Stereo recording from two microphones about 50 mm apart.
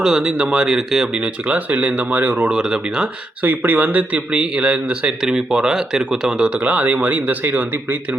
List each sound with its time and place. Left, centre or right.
0.0 s speech: centre
1.2 s a man's voice: right
2.5 s speech: centre
3.4 s a man's voice: right; by 6.6 s centre
6.6 s a man's voice: right